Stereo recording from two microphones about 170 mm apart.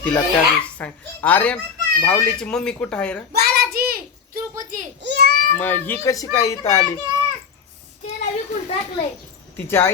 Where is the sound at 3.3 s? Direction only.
70° right (ahead or behind); by 4.8 s 50° right (ahead or behind).